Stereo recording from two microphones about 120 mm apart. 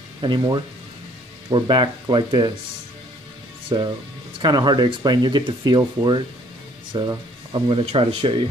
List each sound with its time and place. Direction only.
0.2 s speech: 40° right (ahead or behind)
3.6 s speech: 35° right (ahead or behind)
7.8 s speech: 55° right (ahead or behind)